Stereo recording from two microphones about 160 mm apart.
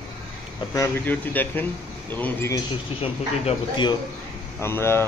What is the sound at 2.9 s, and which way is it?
Speech, 30° left (ahead or behind).